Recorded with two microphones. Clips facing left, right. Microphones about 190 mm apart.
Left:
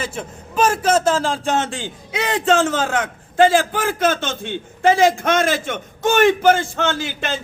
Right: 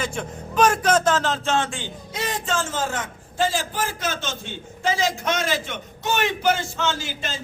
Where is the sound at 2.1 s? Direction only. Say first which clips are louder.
Left 9 dB; 70° left (ahead or behind).